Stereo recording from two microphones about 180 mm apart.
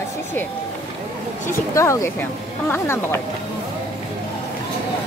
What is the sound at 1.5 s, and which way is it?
Speech, 15° left (ahead or behind).